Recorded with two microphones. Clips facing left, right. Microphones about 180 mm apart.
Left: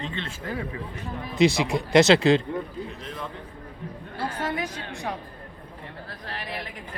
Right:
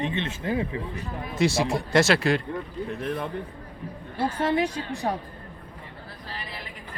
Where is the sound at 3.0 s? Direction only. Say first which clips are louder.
Right 6 dB; 60° right (ahead or behind).